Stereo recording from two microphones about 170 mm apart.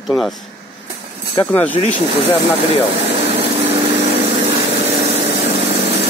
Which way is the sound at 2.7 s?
35° right (ahead or behind).